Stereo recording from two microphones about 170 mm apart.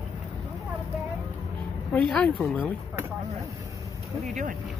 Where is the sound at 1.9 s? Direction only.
5° left (ahead or behind).